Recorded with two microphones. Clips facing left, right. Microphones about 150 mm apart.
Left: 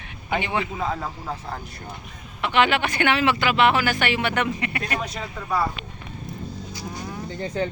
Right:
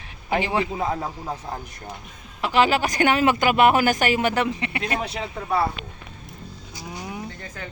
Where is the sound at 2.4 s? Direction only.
35° right (ahead or behind).